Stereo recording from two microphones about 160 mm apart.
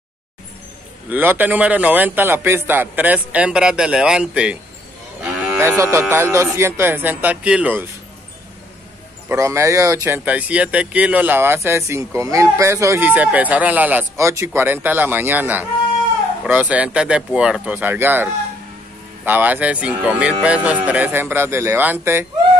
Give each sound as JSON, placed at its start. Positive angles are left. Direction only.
{"t": 1.1, "sound": "speech", "side_deg": -10}
{"t": 5.6, "sound": "speech", "side_deg": -15}
{"t": 9.3, "sound": "speech", "side_deg": -15}